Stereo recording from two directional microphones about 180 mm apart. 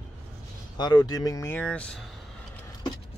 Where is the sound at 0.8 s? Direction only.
25° left (ahead or behind); by 2.1 s 5° left (ahead or behind).